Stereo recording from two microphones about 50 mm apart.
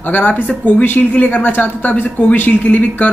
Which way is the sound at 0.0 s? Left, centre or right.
Left.